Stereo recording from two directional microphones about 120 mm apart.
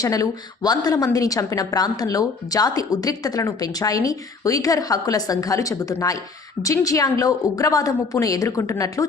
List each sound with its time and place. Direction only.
0.0 s a woman's voice: 30° left (ahead or behind)